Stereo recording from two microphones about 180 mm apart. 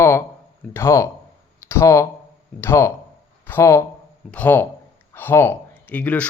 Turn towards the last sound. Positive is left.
turn(degrees=10)  # may be behind; listen again after turning